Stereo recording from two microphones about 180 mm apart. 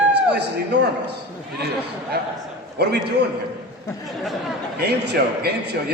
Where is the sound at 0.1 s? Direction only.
70° right (ahead or behind).